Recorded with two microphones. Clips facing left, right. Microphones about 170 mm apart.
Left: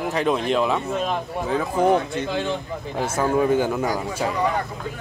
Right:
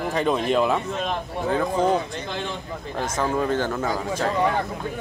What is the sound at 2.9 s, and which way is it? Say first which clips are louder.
Speech: left 3 dB; 10° left (ahead or behind).